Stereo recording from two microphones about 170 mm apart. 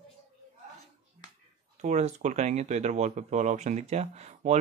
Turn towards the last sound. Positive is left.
turn(degrees=-40)  # may be behind; listen again after turning